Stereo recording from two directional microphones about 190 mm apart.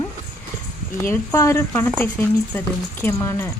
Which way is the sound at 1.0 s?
15° left (ahead or behind).